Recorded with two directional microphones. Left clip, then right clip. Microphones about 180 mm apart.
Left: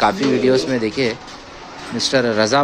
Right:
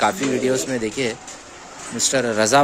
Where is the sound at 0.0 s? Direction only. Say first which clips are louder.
Left 4 dB; 10° right (ahead or behind).